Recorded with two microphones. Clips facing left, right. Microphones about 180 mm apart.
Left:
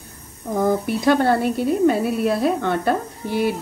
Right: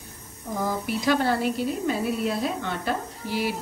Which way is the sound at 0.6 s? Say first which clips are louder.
Left 8 dB; 55° left (ahead or behind).